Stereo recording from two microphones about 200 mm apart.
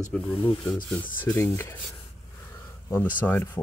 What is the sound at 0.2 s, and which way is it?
Speech, 30° left (ahead or behind).